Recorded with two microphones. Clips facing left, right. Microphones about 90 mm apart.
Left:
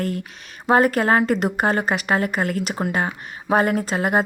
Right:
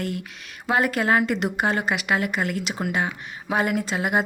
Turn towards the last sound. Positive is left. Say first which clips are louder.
# left 3 dB
turn(degrees=45)  # may be behind; listen again after turning